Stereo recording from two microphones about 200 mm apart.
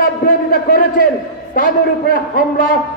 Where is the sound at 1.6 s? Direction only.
45° left (ahead or behind).